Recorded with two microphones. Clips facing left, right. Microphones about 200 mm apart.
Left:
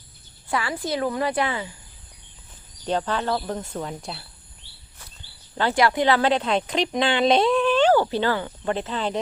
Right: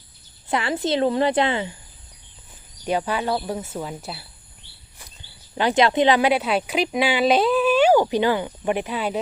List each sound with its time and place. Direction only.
0.4 s a woman's voice: 20° right (ahead or behind)
2.8 s speech: 10° right (ahead or behind)
5.5 s speech: 20° right (ahead or behind)